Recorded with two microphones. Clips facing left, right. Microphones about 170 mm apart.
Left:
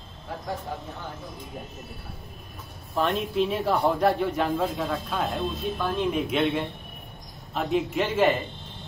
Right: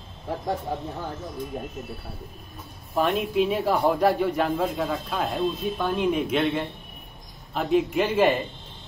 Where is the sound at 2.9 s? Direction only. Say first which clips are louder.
Right 2 dB; 5° right (ahead or behind).